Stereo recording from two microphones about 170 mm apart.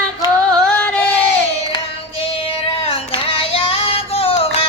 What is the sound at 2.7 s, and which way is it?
Child singing, 35° left (ahead or behind).